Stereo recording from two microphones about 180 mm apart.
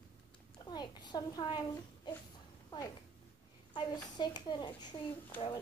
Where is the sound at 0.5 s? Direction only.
25° left (ahead or behind).